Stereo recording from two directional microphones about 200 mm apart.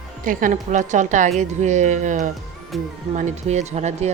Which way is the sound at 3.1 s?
35° right (ahead or behind).